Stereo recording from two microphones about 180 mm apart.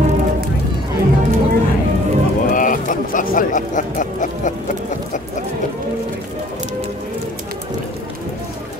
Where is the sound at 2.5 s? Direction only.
50° left (ahead or behind).